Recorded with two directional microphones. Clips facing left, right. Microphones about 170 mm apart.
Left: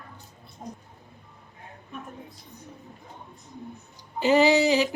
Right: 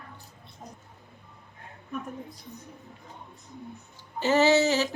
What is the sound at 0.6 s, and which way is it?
Speech, 35° left (ahead or behind).